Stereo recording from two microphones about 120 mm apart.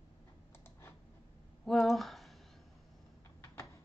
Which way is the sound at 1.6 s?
Centre (ahead or behind).